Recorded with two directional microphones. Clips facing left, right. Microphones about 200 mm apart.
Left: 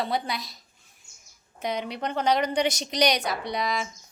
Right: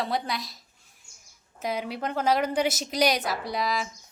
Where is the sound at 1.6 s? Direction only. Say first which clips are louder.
Even; 5° right (ahead or behind).